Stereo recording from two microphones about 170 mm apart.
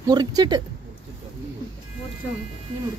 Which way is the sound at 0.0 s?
25° right (ahead or behind).